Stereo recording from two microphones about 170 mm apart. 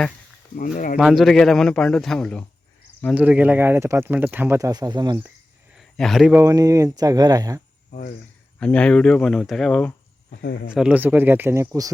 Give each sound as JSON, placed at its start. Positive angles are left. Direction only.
{"t": 0.5, "sound": "speech", "side_deg": 55}
{"t": 0.9, "sound": "speech", "side_deg": 0}
{"t": 3.2, "sound": "speech", "side_deg": -10}
{"t": 5.7, "sound": "a sound", "side_deg": 0}
{"t": 6.3, "sound": "speech", "side_deg": -20}
{"t": 7.9, "sound": "cricket", "side_deg": 50}
{"t": 8.5, "sound": "speech", "side_deg": 5}
{"t": 10.4, "sound": "speech", "side_deg": 75}
{"t": 10.7, "sound": "speech", "side_deg": -5}